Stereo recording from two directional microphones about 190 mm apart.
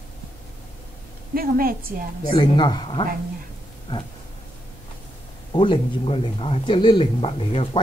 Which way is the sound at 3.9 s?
20° left (ahead or behind).